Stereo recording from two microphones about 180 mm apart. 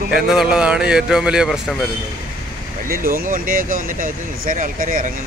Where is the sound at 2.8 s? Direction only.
50° right (ahead or behind).